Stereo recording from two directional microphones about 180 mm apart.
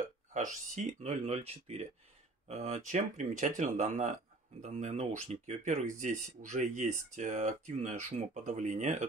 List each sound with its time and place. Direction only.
0.3 s speech: 40° right (ahead or behind)